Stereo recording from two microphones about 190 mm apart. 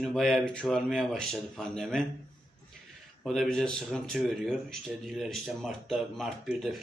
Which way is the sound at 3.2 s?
Centre (ahead or behind).